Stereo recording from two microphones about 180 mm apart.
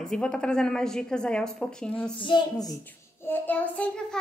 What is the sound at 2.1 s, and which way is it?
Speech, 25° left (ahead or behind).